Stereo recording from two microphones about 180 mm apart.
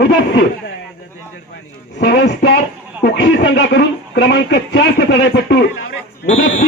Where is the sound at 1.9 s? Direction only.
70° left (ahead or behind).